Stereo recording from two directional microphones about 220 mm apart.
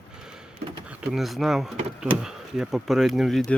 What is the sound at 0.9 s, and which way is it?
Speech, centre (ahead or behind).